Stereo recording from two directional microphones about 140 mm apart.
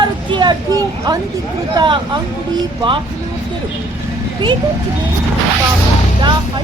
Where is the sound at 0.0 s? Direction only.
30° right (ahead or behind).